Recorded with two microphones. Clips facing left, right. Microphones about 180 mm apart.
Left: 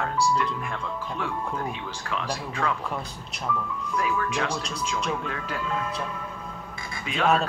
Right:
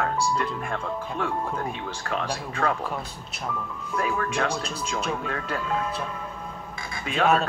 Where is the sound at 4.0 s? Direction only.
40° right (ahead or behind).